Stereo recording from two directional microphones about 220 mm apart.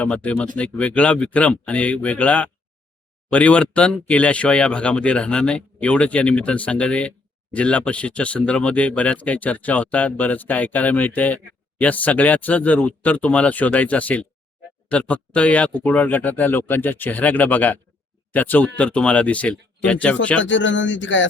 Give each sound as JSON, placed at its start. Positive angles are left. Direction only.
{"t": 0.0, "sound": "speech", "side_deg": 5}
{"t": 20.4, "sound": "speech", "side_deg": 55}